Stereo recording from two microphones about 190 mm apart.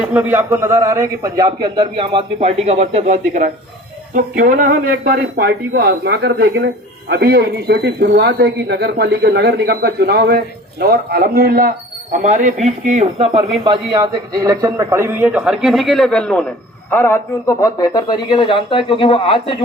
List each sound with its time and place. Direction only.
0.0 s a man's voice: 10° right (ahead or behind); by 19.5 s 25° left (ahead or behind)